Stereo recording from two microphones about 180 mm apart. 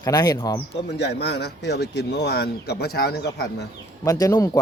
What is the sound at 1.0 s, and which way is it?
Speech, 70° left (ahead or behind).